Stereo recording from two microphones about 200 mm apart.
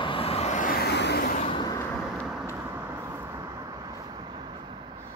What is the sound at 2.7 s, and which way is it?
Vehicle, 10° right (ahead or behind).